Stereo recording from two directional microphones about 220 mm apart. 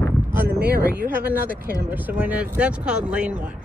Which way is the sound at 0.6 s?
45° right (ahead or behind).